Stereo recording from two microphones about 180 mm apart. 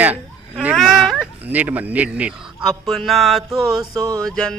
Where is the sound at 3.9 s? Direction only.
20° right (ahead or behind).